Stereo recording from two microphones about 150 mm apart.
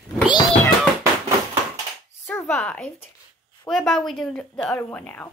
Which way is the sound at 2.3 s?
15° left (ahead or behind).